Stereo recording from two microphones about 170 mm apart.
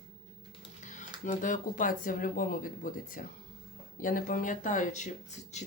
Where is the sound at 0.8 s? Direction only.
45° left (ahead or behind).